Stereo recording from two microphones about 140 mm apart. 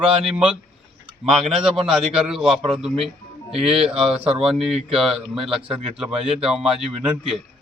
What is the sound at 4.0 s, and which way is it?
Speech, 40° right (ahead or behind).